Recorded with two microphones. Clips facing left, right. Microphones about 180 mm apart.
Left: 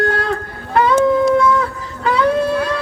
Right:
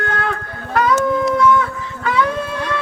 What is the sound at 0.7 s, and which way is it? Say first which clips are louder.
Music: left 3 dB; 30° left (ahead or behind).